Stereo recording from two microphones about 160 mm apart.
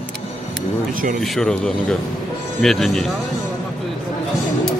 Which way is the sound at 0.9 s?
60° right (ahead or behind).